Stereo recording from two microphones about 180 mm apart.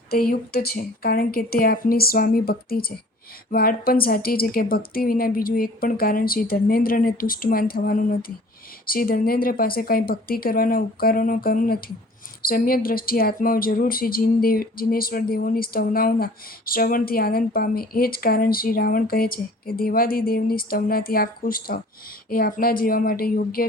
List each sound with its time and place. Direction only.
0.1 s a woman's voice: 55° left (ahead or behind)